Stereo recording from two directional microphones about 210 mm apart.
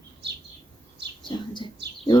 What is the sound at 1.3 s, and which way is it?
Speech, 25° left (ahead or behind).